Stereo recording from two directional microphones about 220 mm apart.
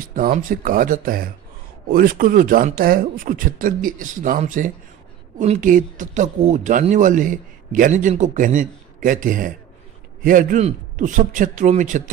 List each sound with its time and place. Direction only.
0.0 s speech: 40° right (ahead or behind)